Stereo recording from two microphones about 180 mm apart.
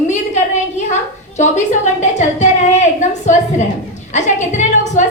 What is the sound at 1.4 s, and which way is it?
A woman's voice, 40° left (ahead or behind).